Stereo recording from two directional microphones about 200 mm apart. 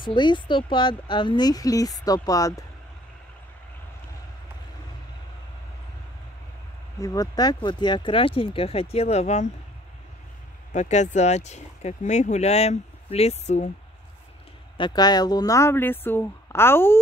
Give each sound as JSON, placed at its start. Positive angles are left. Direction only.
{"t": 0.0, "sound": "speech", "side_deg": 25}
{"t": 7.0, "sound": "speech", "side_deg": 15}
{"t": 10.7, "sound": "speech", "side_deg": 35}
{"t": 14.8, "sound": "speech", "side_deg": 20}